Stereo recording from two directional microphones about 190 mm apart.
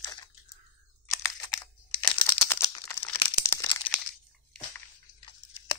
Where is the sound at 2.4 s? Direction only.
10° left (ahead or behind).